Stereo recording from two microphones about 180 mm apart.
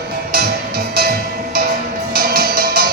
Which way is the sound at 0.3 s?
55° right (ahead or behind).